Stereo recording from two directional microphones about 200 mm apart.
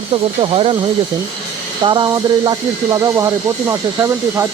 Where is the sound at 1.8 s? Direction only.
25° right (ahead or behind).